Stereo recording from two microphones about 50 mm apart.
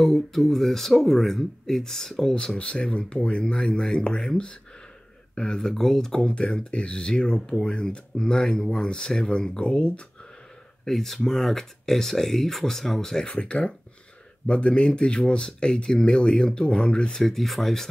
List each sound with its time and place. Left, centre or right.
0.0 s speech: centre
2.3 s speech: centre
10.9 s speech: centre
13.3 s speech: left
17.2 s speech: centre